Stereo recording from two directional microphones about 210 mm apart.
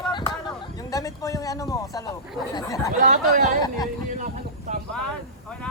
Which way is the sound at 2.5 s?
15° left (ahead or behind).